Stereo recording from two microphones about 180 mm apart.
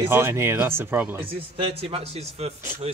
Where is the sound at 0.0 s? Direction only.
15° right (ahead or behind).